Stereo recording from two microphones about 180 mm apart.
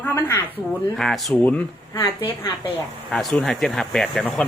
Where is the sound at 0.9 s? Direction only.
Centre (ahead or behind).